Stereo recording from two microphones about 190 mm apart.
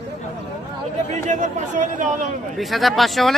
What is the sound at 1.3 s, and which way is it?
Speech, 40° right (ahead or behind).